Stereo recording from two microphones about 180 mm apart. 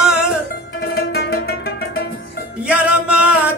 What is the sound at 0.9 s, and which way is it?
Music, 60° left (ahead or behind).